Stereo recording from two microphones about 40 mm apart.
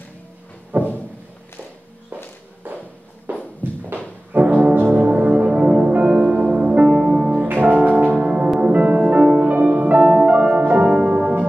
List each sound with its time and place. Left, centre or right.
0.7 s a sound: right
3.3 s music: right
6.0 s music: right
7.5 s music: right
8.1 s music: right
9.1 s music: right